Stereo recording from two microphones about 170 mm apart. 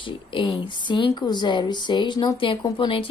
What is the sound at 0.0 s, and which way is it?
Speech, 30° left (ahead or behind).